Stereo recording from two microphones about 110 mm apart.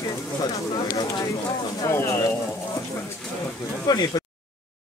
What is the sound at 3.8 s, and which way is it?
Speech, 35° left (ahead or behind).